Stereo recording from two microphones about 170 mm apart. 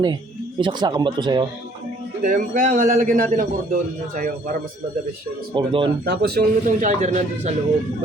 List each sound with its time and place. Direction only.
0.6 s speech: 25° right (ahead or behind)
2.2 s a man's voice: 55° right (ahead or behind)
5.5 s speech: 30° right (ahead or behind)
6.1 s speech: 70° right (ahead or behind)
6.7 s a man's voice: 45° right (ahead or behind)